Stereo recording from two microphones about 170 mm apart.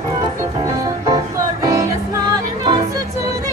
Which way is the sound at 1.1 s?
20° right (ahead or behind).